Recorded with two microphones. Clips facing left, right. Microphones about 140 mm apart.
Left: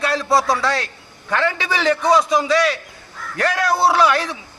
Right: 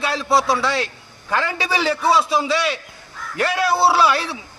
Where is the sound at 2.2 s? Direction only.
25° right (ahead or behind).